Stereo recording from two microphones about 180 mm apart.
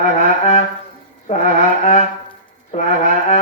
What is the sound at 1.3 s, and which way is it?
Music, 40° left (ahead or behind).